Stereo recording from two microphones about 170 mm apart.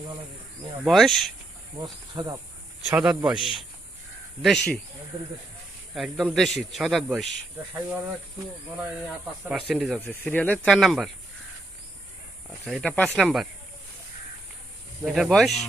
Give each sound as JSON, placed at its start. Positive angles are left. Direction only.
{"t": 0.9, "sound": "a man's voice", "side_deg": 0}
{"t": 1.8, "sound": "insect", "side_deg": -25}
{"t": 2.8, "sound": "a man's voice", "side_deg": -5}
{"t": 5.9, "sound": "a man's voice", "side_deg": 0}
{"t": 9.5, "sound": "a man's voice", "side_deg": 0}
{"t": 10.2, "sound": "a man's voice", "side_deg": 10}
{"t": 12.5, "sound": "a man's voice", "side_deg": 0}
{"t": 15.0, "sound": "a man's voice", "side_deg": 0}